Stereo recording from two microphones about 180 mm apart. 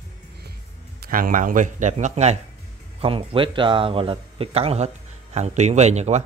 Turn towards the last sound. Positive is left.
turn(degrees=-40)  # may be behind; listen again after turning